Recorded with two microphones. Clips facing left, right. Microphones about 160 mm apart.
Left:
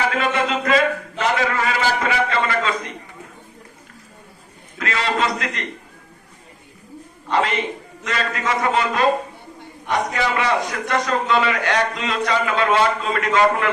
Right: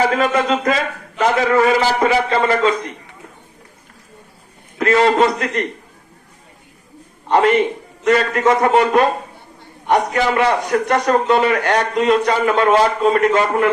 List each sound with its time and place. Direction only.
0.0 s a sound: 40° right (ahead or behind)
1.2 s a man's voice: 40° right (ahead or behind)
4.8 s a man's voice: 50° right (ahead or behind)
8.0 s a man's voice: 50° right (ahead or behind)